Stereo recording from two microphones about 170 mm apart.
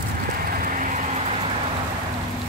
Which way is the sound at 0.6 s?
50° right (ahead or behind).